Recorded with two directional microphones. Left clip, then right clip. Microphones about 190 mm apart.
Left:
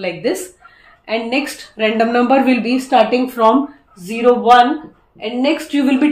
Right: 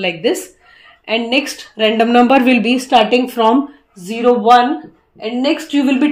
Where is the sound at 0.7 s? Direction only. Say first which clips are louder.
Right 2 dB; 45° right (ahead or behind).